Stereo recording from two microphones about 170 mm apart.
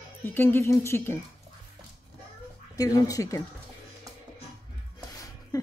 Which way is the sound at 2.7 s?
20° left (ahead or behind).